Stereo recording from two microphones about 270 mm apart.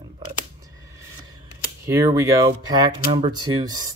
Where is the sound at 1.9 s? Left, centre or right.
Centre.